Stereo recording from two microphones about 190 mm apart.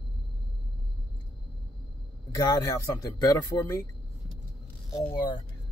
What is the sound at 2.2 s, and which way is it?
A man's voice, 20° left (ahead or behind).